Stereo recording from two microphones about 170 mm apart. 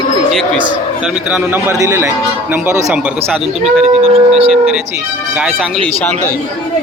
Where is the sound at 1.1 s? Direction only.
5° right (ahead or behind).